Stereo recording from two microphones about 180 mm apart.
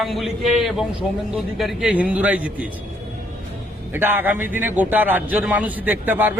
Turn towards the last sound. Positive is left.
turn(degrees=-10)  # may be behind; listen again after turning